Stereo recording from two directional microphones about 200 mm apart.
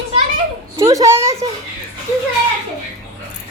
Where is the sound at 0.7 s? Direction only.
15° right (ahead or behind).